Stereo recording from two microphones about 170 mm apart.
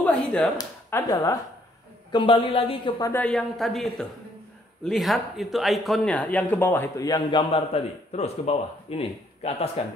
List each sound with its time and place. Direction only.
0.0 s a sound: 5° left (ahead or behind)
0.6 s speech: 15° left (ahead or behind)
2.1 s speech: 30° left (ahead or behind)
3.0 s speech: 10° left (ahead or behind); by 9.7 s 35° left (ahead or behind)